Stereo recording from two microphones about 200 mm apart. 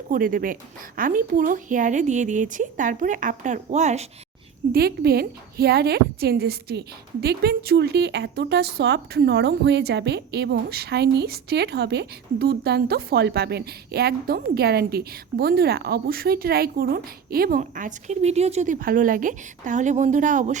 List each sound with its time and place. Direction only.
0.1 s a woman's voice: 45° right (ahead or behind)
4.7 s a woman's voice: 50° right (ahead or behind)